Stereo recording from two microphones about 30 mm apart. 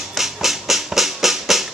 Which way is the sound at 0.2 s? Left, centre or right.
Centre.